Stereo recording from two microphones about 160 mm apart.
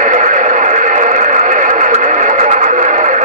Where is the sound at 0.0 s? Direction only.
50° right (ahead or behind).